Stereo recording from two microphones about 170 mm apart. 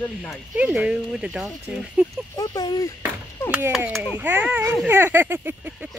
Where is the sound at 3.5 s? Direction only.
10° right (ahead or behind).